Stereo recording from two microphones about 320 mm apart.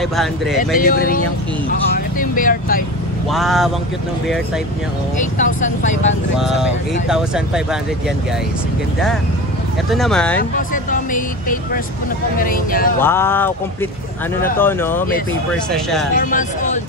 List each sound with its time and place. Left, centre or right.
0.0 s speech: centre
0.7 s speech: left
3.3 s speech: centre
5.2 s speech: left
6.3 s speech: centre
9.8 s speech: centre
10.7 s speech: left
13.0 s speech: centre
16.2 s speech: left